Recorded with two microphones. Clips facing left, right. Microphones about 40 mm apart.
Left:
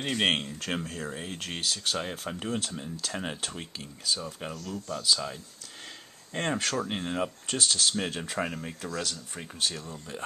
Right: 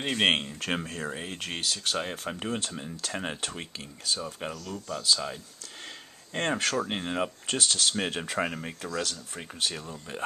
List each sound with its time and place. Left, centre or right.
0.0 s speech: centre
6.9 s speech: centre
9.0 s speech: centre